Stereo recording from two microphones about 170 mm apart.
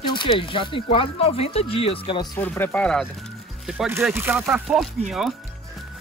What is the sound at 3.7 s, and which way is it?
Speech, 5° right (ahead or behind).